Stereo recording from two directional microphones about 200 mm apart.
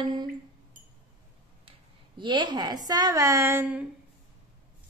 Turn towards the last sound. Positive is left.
turn(degrees=-10)  # may be behind; listen again after turning